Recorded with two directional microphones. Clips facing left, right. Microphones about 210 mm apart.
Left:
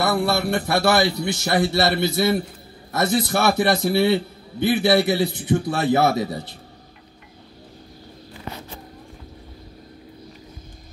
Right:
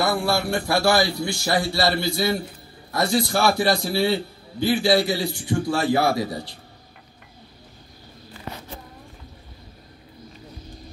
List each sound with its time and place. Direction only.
0.0 s a man's voice: 20° left (ahead or behind)